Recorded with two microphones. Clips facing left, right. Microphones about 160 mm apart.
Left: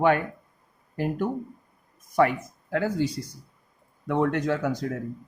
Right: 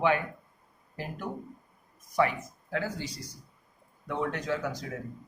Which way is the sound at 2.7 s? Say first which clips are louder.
Left 8 dB; 55° left (ahead or behind).